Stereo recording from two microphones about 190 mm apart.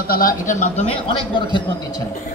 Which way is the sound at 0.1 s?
50° left (ahead or behind).